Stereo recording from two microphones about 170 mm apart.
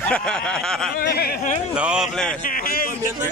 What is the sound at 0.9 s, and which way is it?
Speech, 65° left (ahead or behind).